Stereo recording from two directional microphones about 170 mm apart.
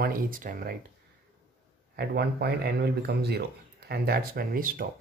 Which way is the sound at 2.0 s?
70° right (ahead or behind).